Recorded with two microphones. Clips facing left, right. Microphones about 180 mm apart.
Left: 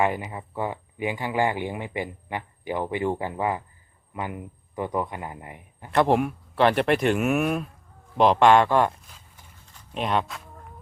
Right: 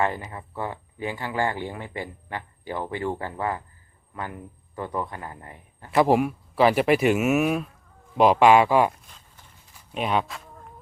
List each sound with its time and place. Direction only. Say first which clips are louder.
0.0 s speech: left 2 dB; 15° left (ahead or behind)
5.9 s speech: right 1 dB; 5° right (ahead or behind)